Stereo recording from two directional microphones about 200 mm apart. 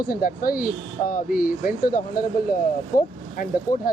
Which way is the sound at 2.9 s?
45° left (ahead or behind).